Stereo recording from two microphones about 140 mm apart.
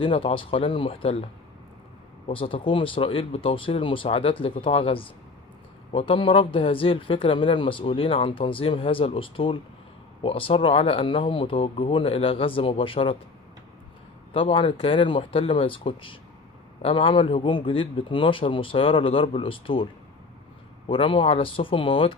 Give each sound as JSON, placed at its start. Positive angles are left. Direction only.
{"t": 0.0, "sound": "speech", "side_deg": 40}
{"t": 14.3, "sound": "speech", "side_deg": 40}